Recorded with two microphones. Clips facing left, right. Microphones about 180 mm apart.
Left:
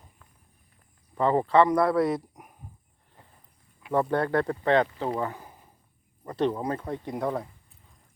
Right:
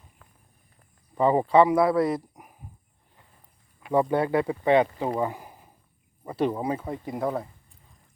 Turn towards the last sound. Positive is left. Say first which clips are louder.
# right 1 dB
turn(degrees=0)  # may be behind; listen again after turning